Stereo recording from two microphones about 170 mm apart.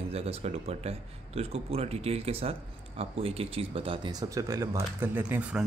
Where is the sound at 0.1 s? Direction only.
35° right (ahead or behind).